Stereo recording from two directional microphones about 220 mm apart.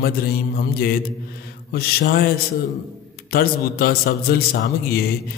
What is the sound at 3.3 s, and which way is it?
Music, 45° left (ahead or behind).